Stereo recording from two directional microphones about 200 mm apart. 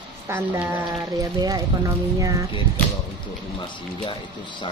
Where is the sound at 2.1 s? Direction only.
15° right (ahead or behind).